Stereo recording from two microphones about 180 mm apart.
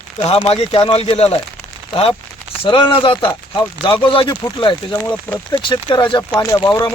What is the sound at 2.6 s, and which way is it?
Speech, 30° left (ahead or behind).